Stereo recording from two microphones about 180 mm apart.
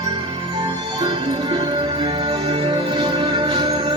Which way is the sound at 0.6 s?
25° right (ahead or behind).